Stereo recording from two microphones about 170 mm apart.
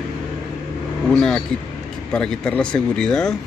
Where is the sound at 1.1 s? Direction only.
5° left (ahead or behind).